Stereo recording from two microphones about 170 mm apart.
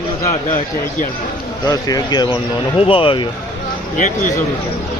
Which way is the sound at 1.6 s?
20° left (ahead or behind).